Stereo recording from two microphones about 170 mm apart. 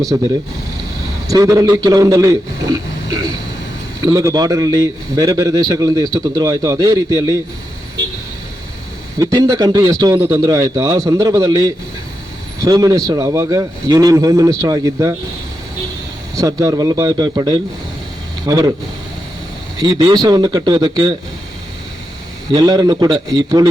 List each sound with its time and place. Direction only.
0.1 s a man's voice: 20° right (ahead or behind)
1.3 s a man's voice: 20° right (ahead or behind)
9.1 s a man's voice: 20° right (ahead or behind)
16.3 s a man's voice: 20° right (ahead or behind)
19.8 s a man's voice: 25° right (ahead or behind)
22.5 s a man's voice: 20° right (ahead or behind)